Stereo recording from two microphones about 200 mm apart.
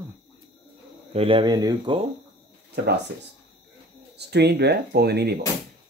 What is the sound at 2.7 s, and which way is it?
Speech, 55° right (ahead or behind).